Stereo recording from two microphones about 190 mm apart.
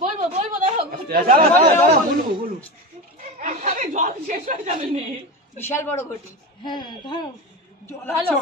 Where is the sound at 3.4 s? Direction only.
40° right (ahead or behind).